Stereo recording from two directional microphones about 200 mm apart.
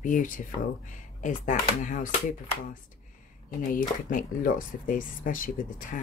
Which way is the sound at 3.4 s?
40° left (ahead or behind).